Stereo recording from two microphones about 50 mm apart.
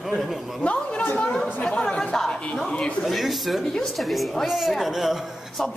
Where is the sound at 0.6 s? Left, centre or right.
Left.